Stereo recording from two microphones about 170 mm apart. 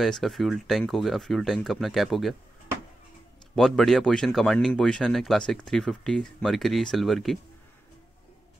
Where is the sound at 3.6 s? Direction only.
Centre (ahead or behind).